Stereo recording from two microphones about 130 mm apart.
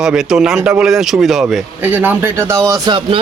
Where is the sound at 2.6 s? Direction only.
30° right (ahead or behind).